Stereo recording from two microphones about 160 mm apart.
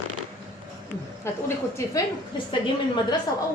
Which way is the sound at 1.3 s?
15° left (ahead or behind).